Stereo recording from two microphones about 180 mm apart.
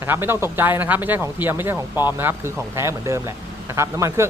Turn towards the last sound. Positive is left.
turn(degrees=-15)  # may be behind; listen again after turning